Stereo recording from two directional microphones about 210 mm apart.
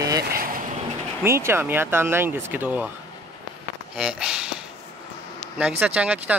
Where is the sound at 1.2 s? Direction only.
10° right (ahead or behind).